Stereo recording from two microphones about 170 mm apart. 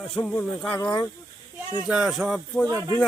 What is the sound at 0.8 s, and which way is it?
Speech, 25° left (ahead or behind).